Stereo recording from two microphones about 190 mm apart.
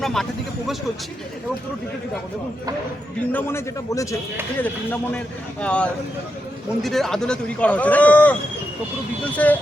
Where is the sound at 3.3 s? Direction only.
15° left (ahead or behind).